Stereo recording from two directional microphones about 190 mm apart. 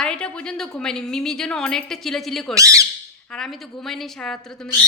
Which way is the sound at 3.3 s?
Centre (ahead or behind).